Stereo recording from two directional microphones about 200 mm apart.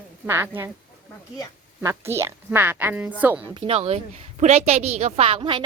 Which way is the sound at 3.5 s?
30° right (ahead or behind).